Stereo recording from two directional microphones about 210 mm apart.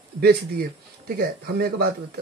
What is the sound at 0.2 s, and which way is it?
Speech, 45° right (ahead or behind).